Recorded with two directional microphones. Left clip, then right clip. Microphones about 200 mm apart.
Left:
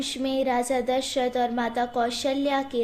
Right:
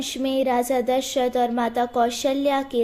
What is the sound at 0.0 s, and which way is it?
A woman's voice, 50° right (ahead or behind).